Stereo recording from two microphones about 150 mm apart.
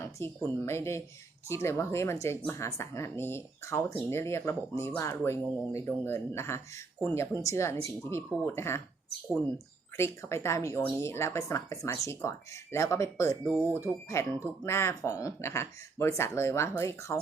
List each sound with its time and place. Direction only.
0.2 s speech: 15° left (ahead or behind)
10.0 s speech: 20° left (ahead or behind)